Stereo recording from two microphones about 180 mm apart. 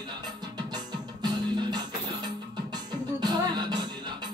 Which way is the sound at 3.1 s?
25° right (ahead or behind).